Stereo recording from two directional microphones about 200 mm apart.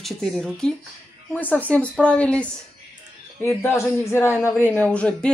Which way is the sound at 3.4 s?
15° left (ahead or behind).